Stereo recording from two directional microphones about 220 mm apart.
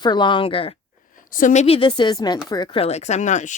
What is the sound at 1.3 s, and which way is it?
Speech, 35° left (ahead or behind).